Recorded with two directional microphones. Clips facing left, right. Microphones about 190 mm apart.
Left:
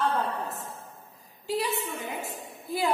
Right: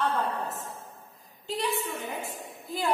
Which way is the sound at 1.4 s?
5° left (ahead or behind).